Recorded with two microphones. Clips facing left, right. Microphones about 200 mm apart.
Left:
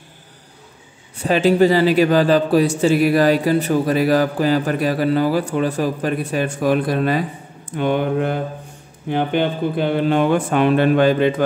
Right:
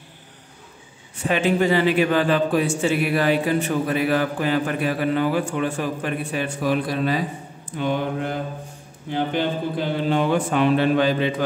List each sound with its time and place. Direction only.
1.2 s a man's voice: 35° left (ahead or behind); by 11.4 s 55° left (ahead or behind)